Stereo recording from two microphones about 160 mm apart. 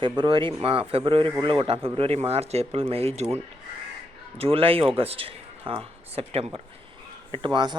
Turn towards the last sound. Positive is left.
turn(degrees=-25)  # may be behind; listen again after turning